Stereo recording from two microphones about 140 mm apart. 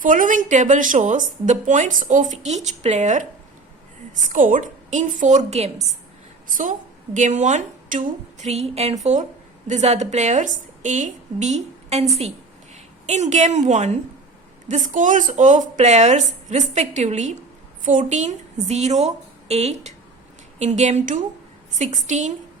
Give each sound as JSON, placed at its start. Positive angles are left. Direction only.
{"t": 0.0, "sound": "a woman's voice", "side_deg": -70}
{"t": 6.5, "sound": "a woman's voice", "side_deg": -70}
{"t": 14.7, "sound": "a woman's voice", "side_deg": -65}